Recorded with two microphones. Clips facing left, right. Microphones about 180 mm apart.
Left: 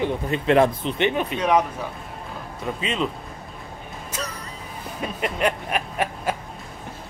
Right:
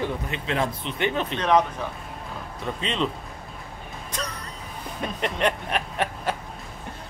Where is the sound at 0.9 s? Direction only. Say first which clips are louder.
Left 2 dB; 20° left (ahead or behind).